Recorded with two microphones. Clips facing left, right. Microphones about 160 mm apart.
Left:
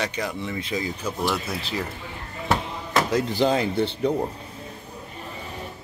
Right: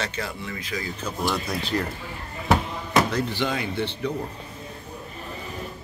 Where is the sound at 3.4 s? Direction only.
35° left (ahead or behind).